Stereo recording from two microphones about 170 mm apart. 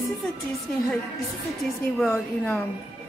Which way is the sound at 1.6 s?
Centre (ahead or behind).